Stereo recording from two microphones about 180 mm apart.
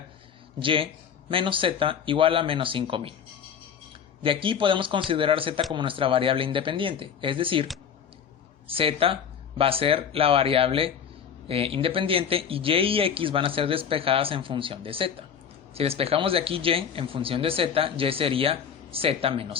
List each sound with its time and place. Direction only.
0.6 s speech: 30° right (ahead or behind)
4.2 s speech: 30° right (ahead or behind)